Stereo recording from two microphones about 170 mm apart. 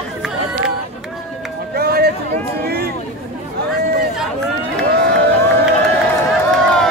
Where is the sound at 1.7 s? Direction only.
65° right (ahead or behind).